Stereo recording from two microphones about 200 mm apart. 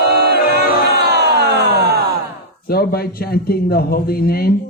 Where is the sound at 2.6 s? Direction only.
50° left (ahead or behind).